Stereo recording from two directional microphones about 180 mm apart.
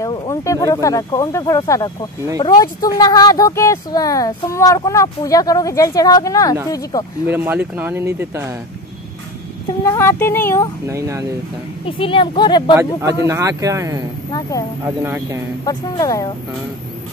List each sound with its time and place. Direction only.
0.0 s speech: 20° left (ahead or behind)
7.2 s speech: 10° right (ahead or behind)
9.8 s speech: 15° left (ahead or behind)
10.9 s speech: 15° right (ahead or behind)
11.8 s speech: 30° left (ahead or behind)
13.3 s speech: 20° right (ahead or behind)
15.6 s speech: 20° left (ahead or behind)